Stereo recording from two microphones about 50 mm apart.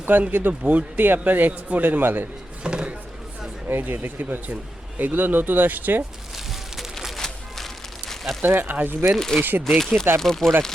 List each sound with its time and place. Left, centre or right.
0.0 s a man's voice: right
0.6 s speech: right
0.9 s a man's voice: right
2.6 s a sound: centre
3.8 s a man's voice: right
7.2 s music: centre
8.4 s a man's voice: right
9.1 s speech: centre
9.4 s a man's voice: right
9.6 s speech: centre